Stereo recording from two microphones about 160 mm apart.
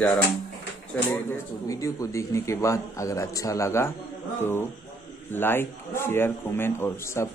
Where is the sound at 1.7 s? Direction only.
20° left (ahead or behind).